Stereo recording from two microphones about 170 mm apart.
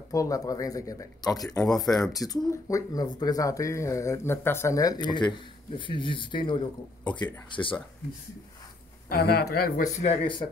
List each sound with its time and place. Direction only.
0.1 s speech: 20° left (ahead or behind)
1.6 s speech: centre (ahead or behind)
2.1 s speech: 20° left (ahead or behind)
9.1 s speech: 65° left (ahead or behind)
9.9 s speech: 35° left (ahead or behind)